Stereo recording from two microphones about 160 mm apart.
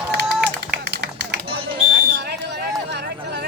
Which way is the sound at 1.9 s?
90° right.